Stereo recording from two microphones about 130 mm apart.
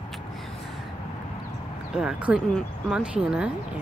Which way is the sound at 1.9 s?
5° right (ahead or behind).